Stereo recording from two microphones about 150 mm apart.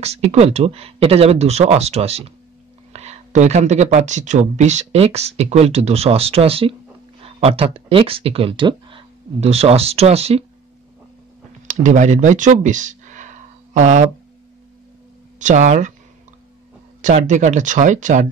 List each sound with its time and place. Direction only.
0.0 s speech: 45° right (ahead or behind)
9.4 s speech: 45° right (ahead or behind)
11.6 s a sound: 55° right (ahead or behind)
15.3 s speech: 55° right (ahead or behind)
17.0 s speech: 55° right (ahead or behind)